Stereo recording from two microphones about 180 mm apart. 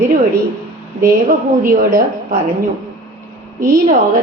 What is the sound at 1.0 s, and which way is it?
A woman's voice, 50° right (ahead or behind).